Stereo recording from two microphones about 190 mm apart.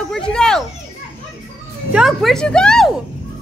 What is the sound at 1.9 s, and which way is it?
Speech, centre (ahead or behind).